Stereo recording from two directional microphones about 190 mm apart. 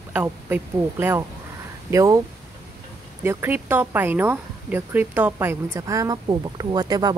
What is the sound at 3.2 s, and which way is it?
Speech, 10° right (ahead or behind).